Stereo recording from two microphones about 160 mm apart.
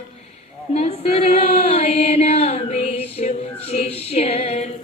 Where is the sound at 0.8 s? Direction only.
40° left (ahead or behind).